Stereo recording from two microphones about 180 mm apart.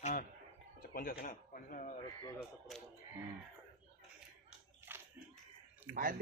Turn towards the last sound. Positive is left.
turn(degrees=-10)  # may be behind; listen again after turning